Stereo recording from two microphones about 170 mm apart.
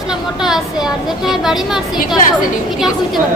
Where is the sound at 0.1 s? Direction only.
5° right (ahead or behind).